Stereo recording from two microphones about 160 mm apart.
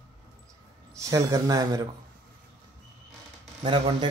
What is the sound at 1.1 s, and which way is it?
Speech, 20° right (ahead or behind).